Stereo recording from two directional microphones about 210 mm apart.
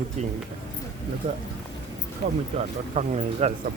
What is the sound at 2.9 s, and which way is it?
Speech, 30° right (ahead or behind).